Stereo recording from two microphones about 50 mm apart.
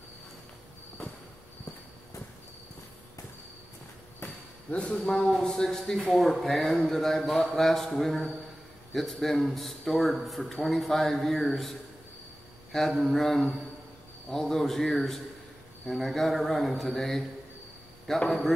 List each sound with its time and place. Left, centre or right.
4.2 s a sound: left
4.9 s speech: centre
5.2 s speech: centre
12.9 s speech: centre